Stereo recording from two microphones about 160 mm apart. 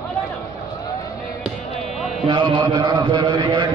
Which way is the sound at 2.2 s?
30° right (ahead or behind).